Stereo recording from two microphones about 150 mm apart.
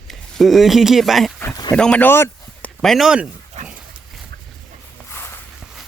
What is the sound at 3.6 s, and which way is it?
Dog, 50° right (ahead or behind).